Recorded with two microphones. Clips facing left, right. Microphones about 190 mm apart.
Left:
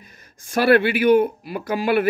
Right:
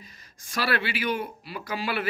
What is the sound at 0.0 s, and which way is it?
Speech, 55° left (ahead or behind).